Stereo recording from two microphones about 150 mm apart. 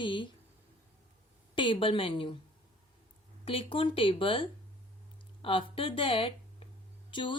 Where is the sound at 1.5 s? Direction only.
35° left (ahead or behind).